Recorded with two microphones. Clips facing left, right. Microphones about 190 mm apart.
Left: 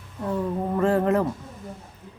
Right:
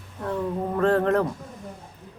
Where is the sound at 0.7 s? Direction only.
10° left (ahead or behind).